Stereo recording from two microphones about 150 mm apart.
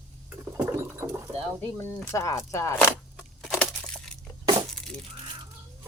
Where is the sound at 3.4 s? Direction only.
5° left (ahead or behind).